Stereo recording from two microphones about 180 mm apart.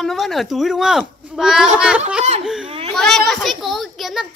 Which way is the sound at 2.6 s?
30° right (ahead or behind).